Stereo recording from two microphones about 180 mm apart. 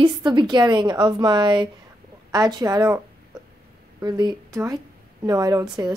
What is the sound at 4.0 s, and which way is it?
Speech, 20° right (ahead or behind).